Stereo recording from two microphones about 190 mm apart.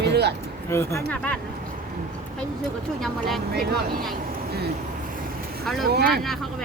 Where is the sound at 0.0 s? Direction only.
60° right (ahead or behind).